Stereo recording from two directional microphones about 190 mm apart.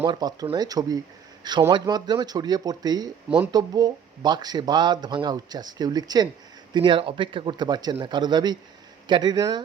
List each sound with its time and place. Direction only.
0.0 s speech: 20° right (ahead or behind)